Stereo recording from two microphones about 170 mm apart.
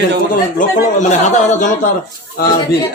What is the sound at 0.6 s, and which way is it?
Speech, 45° left (ahead or behind).